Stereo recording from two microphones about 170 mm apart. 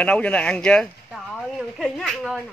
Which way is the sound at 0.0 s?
5° left (ahead or behind).